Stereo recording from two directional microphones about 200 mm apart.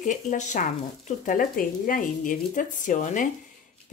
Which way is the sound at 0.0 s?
40° left (ahead or behind).